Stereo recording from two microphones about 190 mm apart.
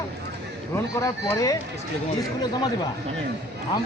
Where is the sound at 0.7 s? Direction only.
15° left (ahead or behind).